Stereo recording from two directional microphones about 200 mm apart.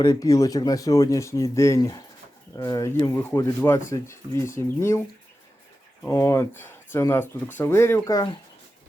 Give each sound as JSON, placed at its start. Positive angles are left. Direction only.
{"t": 0.0, "sound": "speech", "side_deg": 15}